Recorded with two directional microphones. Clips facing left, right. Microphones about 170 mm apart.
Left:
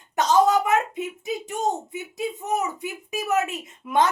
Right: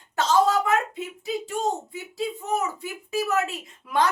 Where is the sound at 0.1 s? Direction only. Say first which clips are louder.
Left 2 dB; 20° left (ahead or behind).